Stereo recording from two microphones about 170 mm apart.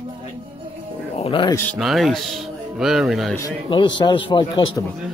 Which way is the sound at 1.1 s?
30° left (ahead or behind).